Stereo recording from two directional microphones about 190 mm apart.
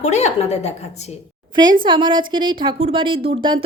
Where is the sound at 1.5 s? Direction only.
20° right (ahead or behind).